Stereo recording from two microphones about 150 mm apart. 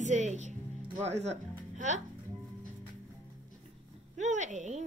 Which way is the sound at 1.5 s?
55° right (ahead or behind).